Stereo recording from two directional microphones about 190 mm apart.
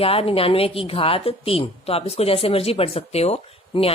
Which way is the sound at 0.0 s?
30° left (ahead or behind).